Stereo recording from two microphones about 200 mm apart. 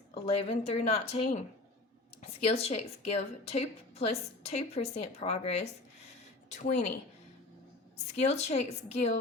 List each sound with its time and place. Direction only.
0.1 s a woman's voice: 30° left (ahead or behind)
7.9 s a woman's voice: 35° left (ahead or behind)